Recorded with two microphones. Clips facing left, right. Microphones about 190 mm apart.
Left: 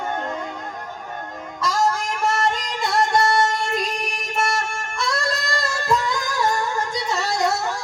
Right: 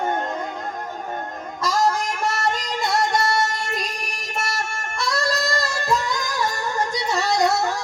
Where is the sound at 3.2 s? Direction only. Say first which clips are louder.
Left 3 dB; 50° left (ahead or behind).